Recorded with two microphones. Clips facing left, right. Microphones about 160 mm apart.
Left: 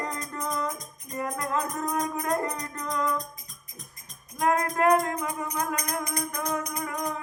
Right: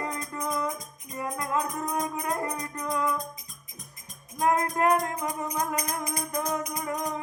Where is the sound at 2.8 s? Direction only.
10° right (ahead or behind).